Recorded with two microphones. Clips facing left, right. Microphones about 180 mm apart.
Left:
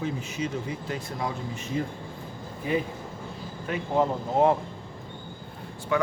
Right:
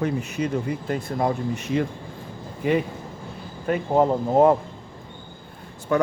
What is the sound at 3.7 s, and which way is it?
Speech, 45° right (ahead or behind).